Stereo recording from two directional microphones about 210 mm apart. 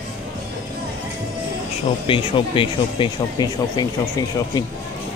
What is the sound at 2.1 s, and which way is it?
Speech, 25° left (ahead or behind).